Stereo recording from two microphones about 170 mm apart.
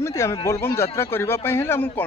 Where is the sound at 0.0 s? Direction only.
15° left (ahead or behind).